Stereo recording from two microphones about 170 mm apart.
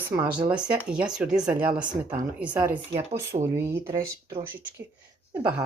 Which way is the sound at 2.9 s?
35° right (ahead or behind).